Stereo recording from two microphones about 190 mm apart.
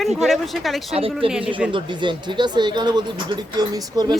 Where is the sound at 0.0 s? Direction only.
Centre (ahead or behind).